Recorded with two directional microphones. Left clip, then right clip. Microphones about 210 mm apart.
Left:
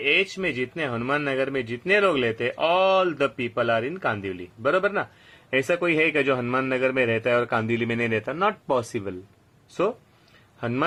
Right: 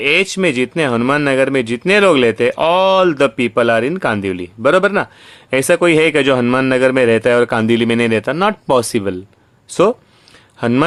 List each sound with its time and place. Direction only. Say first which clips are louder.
0.0 s speech: right 9 dB; 45° right (ahead or behind)
10.6 s speech: right 12 dB; 35° right (ahead or behind)